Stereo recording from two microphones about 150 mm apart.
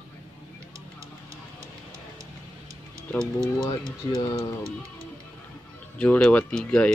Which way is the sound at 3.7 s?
30° left (ahead or behind).